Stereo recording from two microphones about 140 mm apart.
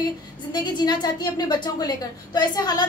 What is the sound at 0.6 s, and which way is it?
A woman's voice, 30° left (ahead or behind).